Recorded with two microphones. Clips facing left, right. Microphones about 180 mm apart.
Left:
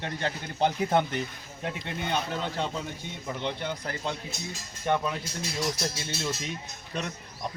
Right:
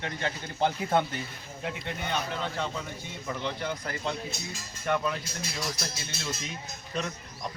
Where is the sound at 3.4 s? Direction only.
20° left (ahead or behind).